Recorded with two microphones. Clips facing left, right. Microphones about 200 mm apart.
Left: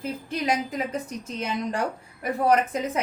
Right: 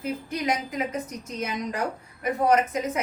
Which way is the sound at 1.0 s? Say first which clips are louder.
Left 1 dB; 30° left (ahead or behind).